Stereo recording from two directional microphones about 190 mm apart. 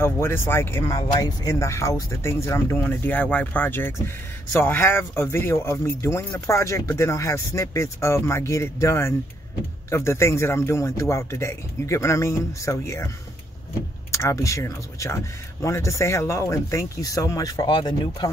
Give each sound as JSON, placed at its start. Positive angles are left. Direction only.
{"t": 0.0, "sound": "speech", "side_deg": 10}
{"t": 14.1, "sound": "speech", "side_deg": 15}